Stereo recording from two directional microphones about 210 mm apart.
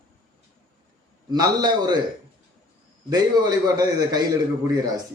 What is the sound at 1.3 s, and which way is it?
Speech, 20° right (ahead or behind).